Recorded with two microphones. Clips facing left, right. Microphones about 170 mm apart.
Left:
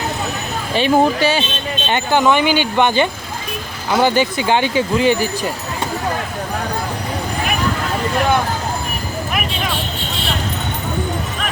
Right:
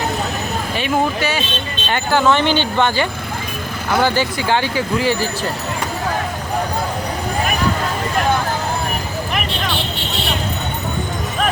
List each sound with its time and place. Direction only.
0.8 s speech: 30° left (ahead or behind)
1.9 s speech: 15° left (ahead or behind)